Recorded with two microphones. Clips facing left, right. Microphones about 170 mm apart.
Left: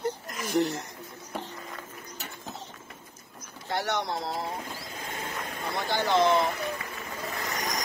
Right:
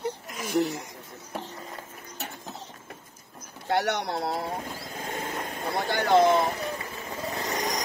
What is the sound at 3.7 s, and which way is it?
Speech, 65° right (ahead or behind).